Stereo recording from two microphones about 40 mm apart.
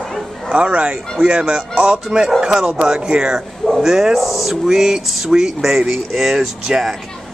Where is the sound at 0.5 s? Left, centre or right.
Right; by 6.5 s centre.